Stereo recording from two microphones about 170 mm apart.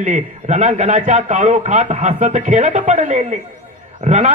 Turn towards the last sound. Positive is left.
turn(degrees=-45)  # may be behind; listen again after turning